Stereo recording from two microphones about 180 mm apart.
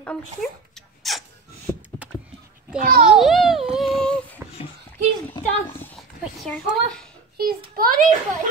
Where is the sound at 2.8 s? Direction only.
55° right (ahead or behind).